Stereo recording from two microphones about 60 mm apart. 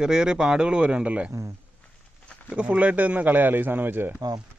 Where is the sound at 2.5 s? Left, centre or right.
Right.